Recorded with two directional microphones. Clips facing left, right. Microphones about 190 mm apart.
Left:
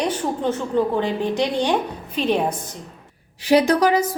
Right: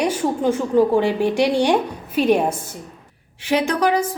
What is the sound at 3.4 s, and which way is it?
Speech, 40° left (ahead or behind).